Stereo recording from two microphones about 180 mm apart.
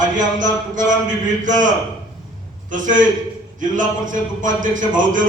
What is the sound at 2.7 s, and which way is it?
Speech, 45° right (ahead or behind).